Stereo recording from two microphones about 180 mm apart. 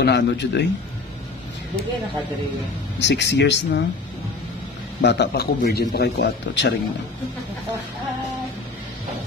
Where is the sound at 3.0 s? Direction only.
70° left (ahead or behind).